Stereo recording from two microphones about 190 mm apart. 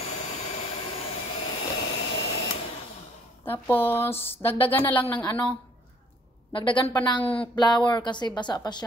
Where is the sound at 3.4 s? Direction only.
10° left (ahead or behind).